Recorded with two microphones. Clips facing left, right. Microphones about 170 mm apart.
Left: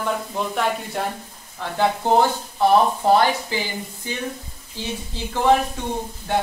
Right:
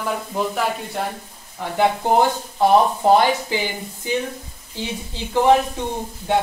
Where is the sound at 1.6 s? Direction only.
15° right (ahead or behind).